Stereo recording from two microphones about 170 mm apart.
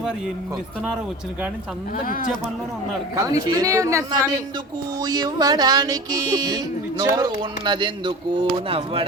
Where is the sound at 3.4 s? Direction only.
20° right (ahead or behind).